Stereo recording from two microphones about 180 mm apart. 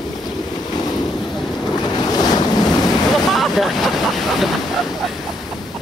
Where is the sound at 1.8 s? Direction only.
20° left (ahead or behind).